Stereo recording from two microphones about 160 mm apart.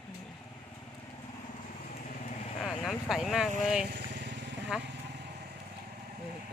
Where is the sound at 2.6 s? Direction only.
Centre (ahead or behind).